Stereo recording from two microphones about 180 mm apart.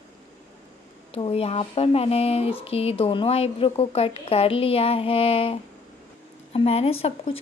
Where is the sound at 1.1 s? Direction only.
35° left (ahead or behind).